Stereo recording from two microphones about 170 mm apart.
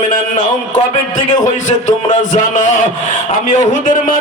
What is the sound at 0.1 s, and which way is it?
A man's voice, 50° left (ahead or behind).